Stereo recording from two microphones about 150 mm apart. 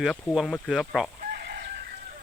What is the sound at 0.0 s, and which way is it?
Speech, centre (ahead or behind).